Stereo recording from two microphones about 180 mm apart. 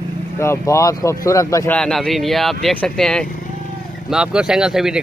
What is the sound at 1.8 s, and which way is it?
Speech, centre (ahead or behind).